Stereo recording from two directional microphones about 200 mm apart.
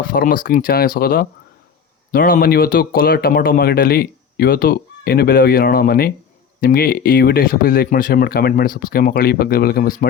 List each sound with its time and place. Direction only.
0.1 s speech: 45° left (ahead or behind)